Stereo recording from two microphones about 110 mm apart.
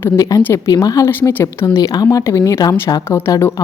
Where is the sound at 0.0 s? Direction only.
30° left (ahead or behind).